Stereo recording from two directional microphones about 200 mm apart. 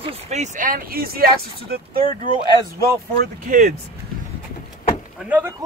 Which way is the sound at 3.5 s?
40° right (ahead or behind).